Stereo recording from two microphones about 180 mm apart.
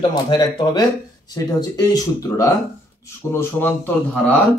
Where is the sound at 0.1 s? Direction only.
25° left (ahead or behind).